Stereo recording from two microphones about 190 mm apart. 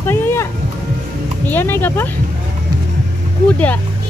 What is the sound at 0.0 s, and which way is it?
Music, 10° left (ahead or behind).